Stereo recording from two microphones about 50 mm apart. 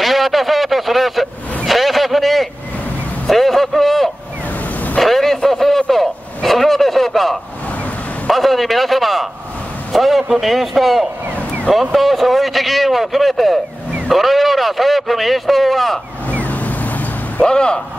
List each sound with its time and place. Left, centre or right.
0.0 s a sound: centre
4.9 s vehicle: centre
8.3 s a sound: centre
14.0 s speech: centre
16.3 s vehicle: left
17.4 s speech: centre